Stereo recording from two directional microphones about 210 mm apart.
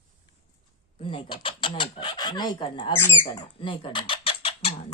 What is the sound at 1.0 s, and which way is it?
Speech, 25° left (ahead or behind).